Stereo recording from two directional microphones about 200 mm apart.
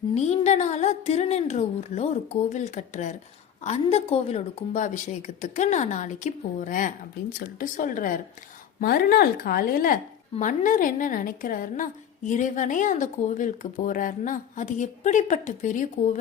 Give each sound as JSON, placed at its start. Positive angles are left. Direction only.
{"t": 0.1, "sound": "a woman's voice", "side_deg": 35}